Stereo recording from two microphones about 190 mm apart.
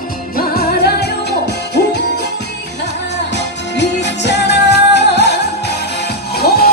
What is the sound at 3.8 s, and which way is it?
Music, 65° left (ahead or behind).